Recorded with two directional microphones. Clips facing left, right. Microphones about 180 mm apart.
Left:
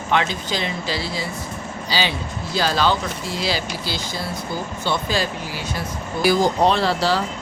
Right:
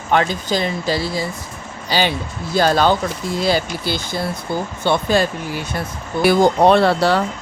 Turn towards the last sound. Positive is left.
turn(degrees=-60)  # may be behind; listen again after turning